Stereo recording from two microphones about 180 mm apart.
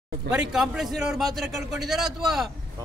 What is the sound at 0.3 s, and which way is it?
A man's voice, 5° right (ahead or behind).